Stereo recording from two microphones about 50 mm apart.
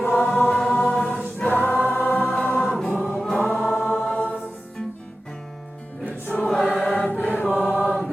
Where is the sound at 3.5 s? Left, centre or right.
Centre.